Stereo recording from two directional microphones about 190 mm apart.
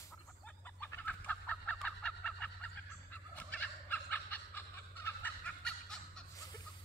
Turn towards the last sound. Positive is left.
turn(degrees=5)  # may be behind; listen again after turning